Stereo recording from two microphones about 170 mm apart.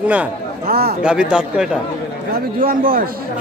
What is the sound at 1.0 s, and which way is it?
Speech, 5° right (ahead or behind).